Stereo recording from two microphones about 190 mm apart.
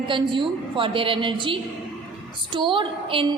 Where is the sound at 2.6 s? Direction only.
25° right (ahead or behind).